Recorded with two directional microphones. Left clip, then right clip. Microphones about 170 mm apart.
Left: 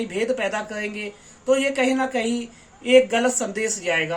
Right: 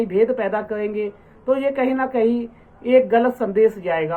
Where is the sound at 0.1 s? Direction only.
15° left (ahead or behind).